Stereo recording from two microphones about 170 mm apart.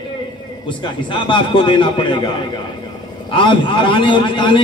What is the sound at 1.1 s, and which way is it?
Speech, 30° left (ahead or behind).